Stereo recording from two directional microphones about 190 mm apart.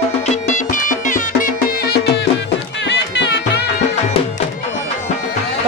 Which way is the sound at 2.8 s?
65° left (ahead or behind).